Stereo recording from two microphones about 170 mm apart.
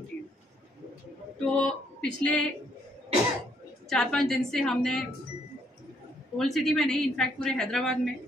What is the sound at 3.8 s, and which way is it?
A woman's voice, centre (ahead or behind).